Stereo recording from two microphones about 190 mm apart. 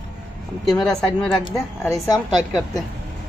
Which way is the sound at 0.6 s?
5° left (ahead or behind).